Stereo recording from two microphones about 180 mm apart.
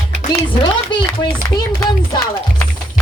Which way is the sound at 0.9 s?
25° left (ahead or behind).